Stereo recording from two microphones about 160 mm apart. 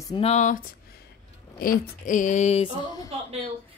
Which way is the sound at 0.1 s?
40° left (ahead or behind).